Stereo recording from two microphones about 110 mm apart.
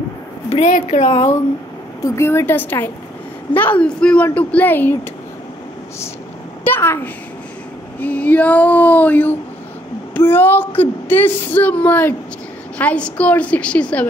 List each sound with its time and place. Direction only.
0.5 s a woman's voice: 75° left (ahead or behind)
2.0 s a woman's voice: 25° left (ahead or behind)
6.6 s a child's voice: 20° left (ahead or behind)
8.0 s a woman's voice: 15° left (ahead or behind)